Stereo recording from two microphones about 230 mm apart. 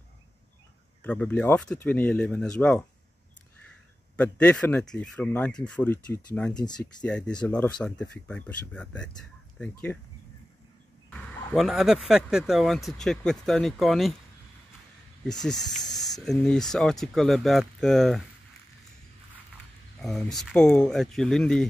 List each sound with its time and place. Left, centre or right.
1.0 s speech: centre
4.2 s speech: centre
6.5 s speech: centre
7.0 s speech: centre
11.1 s speech: centre
15.2 s speech: centre
20.0 s speech: centre